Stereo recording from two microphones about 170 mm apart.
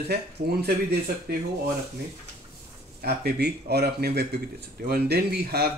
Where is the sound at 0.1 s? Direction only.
70° right (ahead or behind).